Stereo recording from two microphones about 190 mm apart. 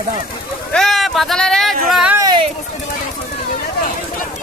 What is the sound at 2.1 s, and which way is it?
Speech, 20° right (ahead or behind).